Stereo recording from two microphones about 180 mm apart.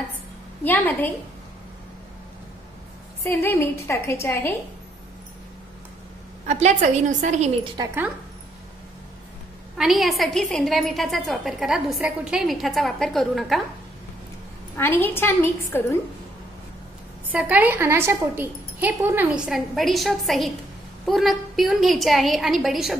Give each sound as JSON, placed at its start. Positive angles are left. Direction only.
{"t": 0.7, "sound": "a woman's voice", "side_deg": 10}
{"t": 3.3, "sound": "a woman's voice", "side_deg": 10}
{"t": 6.4, "sound": "a woman's voice", "side_deg": -40}
{"t": 7.7, "sound": "speech", "side_deg": -20}
{"t": 9.8, "sound": "a woman's voice", "side_deg": 0}
{"t": 14.8, "sound": "a woman's voice", "side_deg": 10}
{"t": 17.3, "sound": "a woman's voice", "side_deg": -10}